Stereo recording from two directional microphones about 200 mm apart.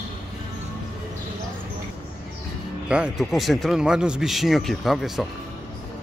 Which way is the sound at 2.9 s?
5° right (ahead or behind).